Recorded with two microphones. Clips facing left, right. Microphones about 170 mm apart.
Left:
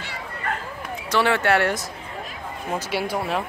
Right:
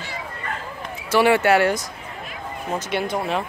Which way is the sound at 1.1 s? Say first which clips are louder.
Right 4 dB; 10° right (ahead or behind).